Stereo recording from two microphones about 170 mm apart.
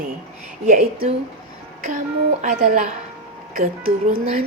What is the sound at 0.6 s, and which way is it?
Speech, 45° right (ahead or behind).